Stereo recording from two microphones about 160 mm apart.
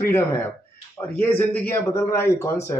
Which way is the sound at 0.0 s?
15° left (ahead or behind).